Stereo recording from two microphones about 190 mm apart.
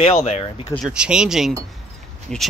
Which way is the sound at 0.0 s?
35° left (ahead or behind).